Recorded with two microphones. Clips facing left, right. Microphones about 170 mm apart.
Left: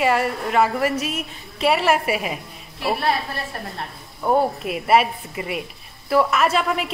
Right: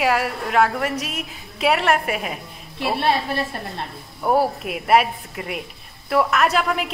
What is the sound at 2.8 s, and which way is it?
Speech, 25° right (ahead or behind).